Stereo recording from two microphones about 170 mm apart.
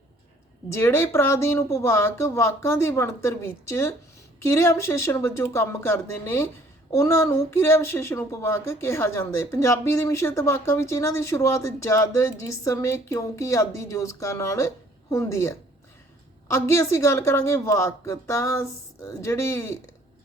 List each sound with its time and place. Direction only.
0.7 s speech: 15° left (ahead or behind)